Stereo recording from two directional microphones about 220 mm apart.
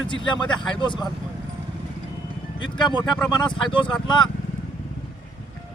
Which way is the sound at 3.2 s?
20° left (ahead or behind).